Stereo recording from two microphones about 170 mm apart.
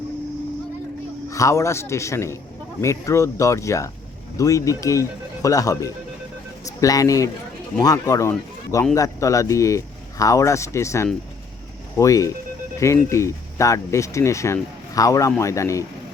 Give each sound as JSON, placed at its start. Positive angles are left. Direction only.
{"t": 1.3, "sound": "speech", "side_deg": 20}